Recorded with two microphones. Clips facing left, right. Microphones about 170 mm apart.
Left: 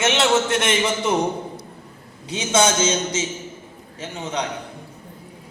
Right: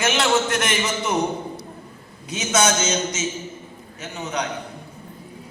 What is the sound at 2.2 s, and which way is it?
A man's voice, 30° left (ahead or behind).